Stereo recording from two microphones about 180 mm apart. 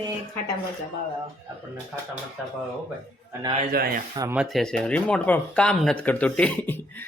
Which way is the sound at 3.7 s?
55° right (ahead or behind).